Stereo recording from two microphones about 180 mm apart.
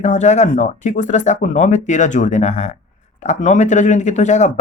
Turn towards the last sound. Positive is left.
turn(degrees=40)  # may be behind; listen again after turning